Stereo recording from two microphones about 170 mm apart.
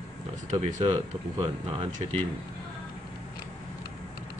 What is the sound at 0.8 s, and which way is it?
Speech, 30° right (ahead or behind).